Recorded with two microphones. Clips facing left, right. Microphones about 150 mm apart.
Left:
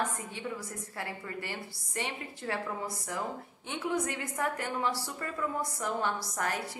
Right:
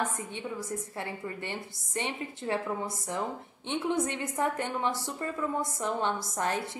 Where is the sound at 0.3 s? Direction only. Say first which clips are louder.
Right 3 dB; 20° right (ahead or behind).